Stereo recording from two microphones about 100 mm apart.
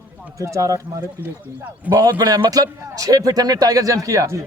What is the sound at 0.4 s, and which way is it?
Speech, 30° right (ahead or behind).